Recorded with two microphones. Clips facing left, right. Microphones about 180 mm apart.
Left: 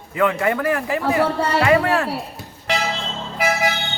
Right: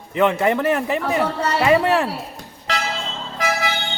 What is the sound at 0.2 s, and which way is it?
Speech, 20° right (ahead or behind).